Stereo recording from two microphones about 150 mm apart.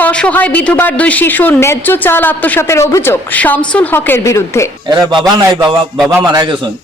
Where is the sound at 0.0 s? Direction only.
10° left (ahead or behind).